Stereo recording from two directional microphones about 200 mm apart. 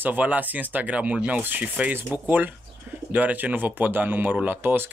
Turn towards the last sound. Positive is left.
turn(degrees=-10)  # may be behind; listen again after turning